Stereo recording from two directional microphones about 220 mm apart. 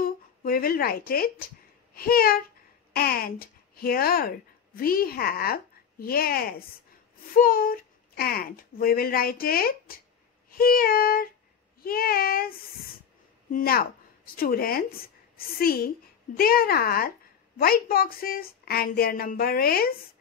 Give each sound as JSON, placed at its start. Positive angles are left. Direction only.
{"t": 0.0, "sound": "a woman's voice", "side_deg": 40}